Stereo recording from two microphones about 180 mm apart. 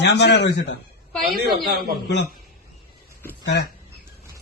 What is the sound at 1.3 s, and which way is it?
Speech, 55° right (ahead or behind).